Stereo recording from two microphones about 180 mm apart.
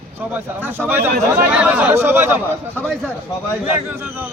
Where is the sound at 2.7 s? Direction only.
5° left (ahead or behind).